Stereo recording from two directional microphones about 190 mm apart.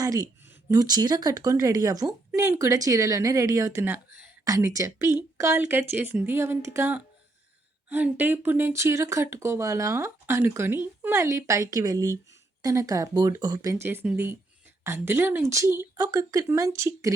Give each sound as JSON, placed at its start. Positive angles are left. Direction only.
{"t": 0.0, "sound": "a woman's voice", "side_deg": -20}